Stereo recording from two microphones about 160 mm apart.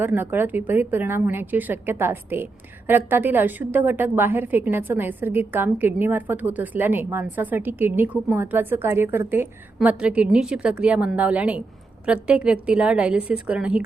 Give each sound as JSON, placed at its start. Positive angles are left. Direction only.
{"t": 0.0, "sound": "a woman's voice", "side_deg": -15}